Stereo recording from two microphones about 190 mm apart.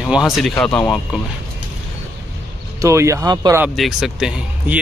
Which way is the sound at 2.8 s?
15° right (ahead or behind).